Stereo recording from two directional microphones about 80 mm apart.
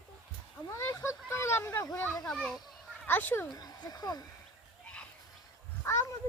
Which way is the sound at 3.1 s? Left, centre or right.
Left.